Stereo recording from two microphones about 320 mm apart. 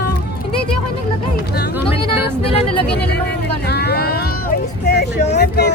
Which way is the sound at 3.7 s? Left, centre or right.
Left.